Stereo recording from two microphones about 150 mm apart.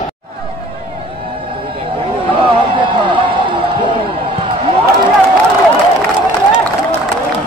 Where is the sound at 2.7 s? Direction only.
35° right (ahead or behind).